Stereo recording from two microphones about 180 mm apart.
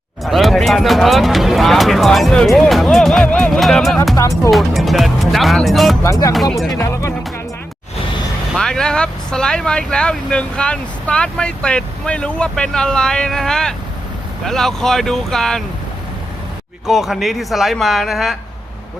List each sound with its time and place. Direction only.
0.3 s speech: centre (ahead or behind)
6.0 s speech: 15° left (ahead or behind)
8.5 s speech: 5° left (ahead or behind)
16.8 s speech: centre (ahead or behind)